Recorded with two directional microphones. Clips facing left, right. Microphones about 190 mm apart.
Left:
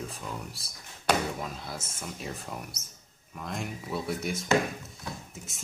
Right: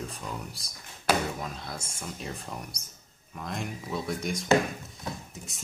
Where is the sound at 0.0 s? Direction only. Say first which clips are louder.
Right 1 dB; centre (ahead or behind).